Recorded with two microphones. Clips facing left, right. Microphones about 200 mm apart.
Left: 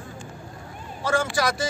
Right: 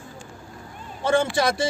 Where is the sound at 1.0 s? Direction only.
25° right (ahead or behind).